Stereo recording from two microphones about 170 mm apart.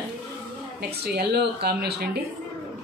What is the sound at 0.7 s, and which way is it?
A woman's voice, 70° right (ahead or behind).